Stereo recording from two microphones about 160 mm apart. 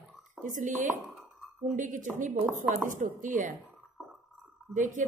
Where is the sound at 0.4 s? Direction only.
55° right (ahead or behind).